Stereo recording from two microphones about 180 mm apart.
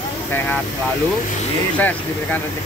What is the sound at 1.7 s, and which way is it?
Speech, 10° left (ahead or behind).